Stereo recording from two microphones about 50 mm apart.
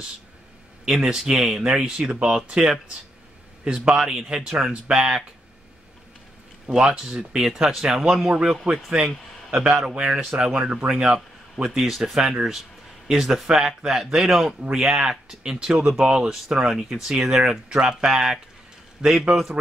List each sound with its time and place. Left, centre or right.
0.8 s speech: centre
6.7 s a man's voice: centre
11.9 s speech: centre
12.2 s speech: centre
14.7 s speech: centre